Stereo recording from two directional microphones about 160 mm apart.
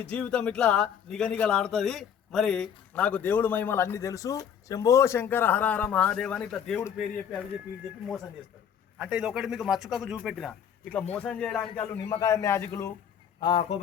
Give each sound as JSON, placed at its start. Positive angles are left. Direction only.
{"t": 0.0, "sound": "a man's voice", "side_deg": 5}
{"t": 9.0, "sound": "a man's voice", "side_deg": -5}
{"t": 12.2, "sound": "speech", "side_deg": 20}
{"t": 13.4, "sound": "speech", "side_deg": 35}